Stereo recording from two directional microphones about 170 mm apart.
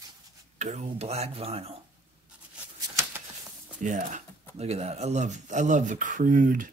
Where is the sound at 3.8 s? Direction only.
45° right (ahead or behind).